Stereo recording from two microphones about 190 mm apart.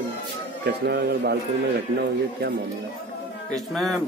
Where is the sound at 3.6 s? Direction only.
Centre (ahead or behind).